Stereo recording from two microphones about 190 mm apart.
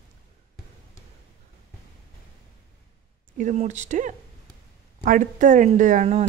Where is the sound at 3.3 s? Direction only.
35° right (ahead or behind).